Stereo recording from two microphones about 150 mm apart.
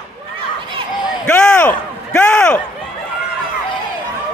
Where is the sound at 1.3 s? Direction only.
10° left (ahead or behind).